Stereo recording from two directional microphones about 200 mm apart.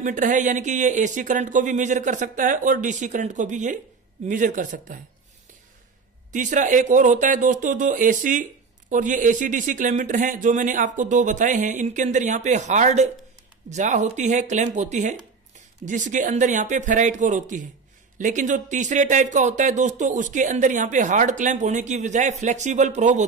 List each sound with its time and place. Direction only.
0.0 s speech: 40° right (ahead or behind)
6.3 s speech: 40° right (ahead or behind)